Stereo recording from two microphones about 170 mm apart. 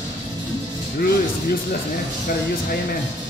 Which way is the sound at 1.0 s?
65° left (ahead or behind).